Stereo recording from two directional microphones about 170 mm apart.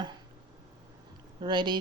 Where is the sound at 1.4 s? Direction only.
25° right (ahead or behind).